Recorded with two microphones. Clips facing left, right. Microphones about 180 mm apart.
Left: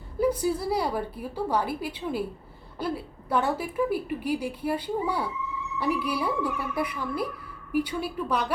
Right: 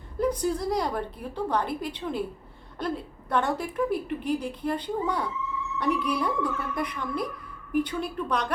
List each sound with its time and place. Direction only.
0.2 s a woman's voice: 5° left (ahead or behind)